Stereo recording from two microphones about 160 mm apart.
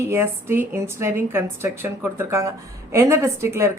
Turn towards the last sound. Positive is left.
turn(degrees=-15)  # may be behind; listen again after turning